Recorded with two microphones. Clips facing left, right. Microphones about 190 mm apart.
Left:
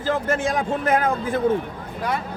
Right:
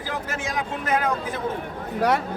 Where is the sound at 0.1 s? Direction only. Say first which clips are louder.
Left 8 dB; 55° left (ahead or behind).